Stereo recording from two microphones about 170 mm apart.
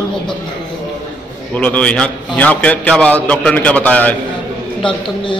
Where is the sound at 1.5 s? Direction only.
5° left (ahead or behind).